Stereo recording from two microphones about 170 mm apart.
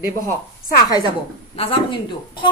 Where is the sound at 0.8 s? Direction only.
20° left (ahead or behind).